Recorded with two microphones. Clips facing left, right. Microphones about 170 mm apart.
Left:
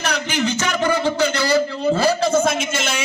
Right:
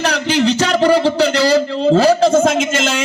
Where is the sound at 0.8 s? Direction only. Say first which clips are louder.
Right 6 dB; 85° right.